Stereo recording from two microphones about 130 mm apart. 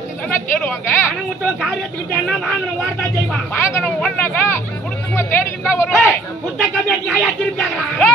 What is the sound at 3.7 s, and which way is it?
Speech, 15° left (ahead or behind).